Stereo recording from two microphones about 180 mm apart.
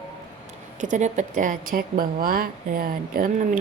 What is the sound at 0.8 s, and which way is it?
A woman's voice, 40° right (ahead or behind).